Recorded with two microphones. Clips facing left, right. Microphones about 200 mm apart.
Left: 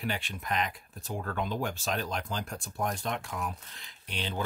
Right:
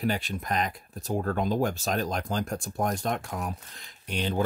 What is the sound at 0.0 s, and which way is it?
Speech, 40° right (ahead or behind).